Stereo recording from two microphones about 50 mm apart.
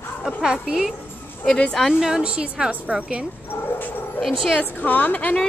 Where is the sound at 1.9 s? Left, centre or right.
Centre.